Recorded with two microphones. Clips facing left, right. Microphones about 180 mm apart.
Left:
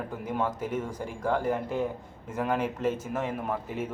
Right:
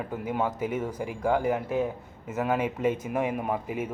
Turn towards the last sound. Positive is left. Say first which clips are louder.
# right 2 dB
turn(degrees=-10)  # may be behind; listen again after turning